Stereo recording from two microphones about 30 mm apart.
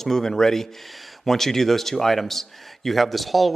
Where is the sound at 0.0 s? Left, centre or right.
Centre.